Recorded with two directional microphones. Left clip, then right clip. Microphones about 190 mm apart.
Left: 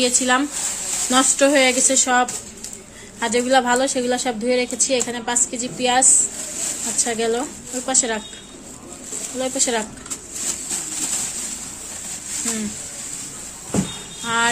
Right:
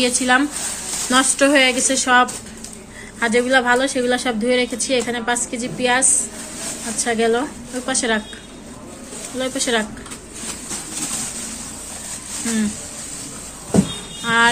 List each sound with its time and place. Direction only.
0.0 s a woman's voice: 15° left (ahead or behind)
9.4 s a woman's voice: 15° left (ahead or behind)
14.2 s speech: 15° left (ahead or behind)